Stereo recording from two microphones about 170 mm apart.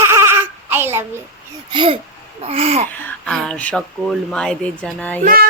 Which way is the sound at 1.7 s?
30° right (ahead or behind).